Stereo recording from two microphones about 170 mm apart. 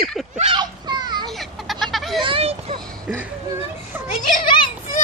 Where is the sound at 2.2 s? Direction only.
35° right (ahead or behind).